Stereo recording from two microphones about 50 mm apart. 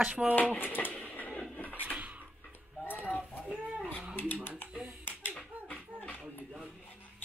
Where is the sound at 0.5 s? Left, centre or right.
Left.